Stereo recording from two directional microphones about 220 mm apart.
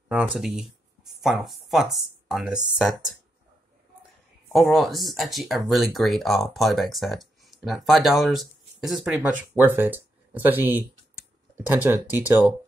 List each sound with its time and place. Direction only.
0.1 s speech: 5° right (ahead or behind)
4.5 s speech: centre (ahead or behind)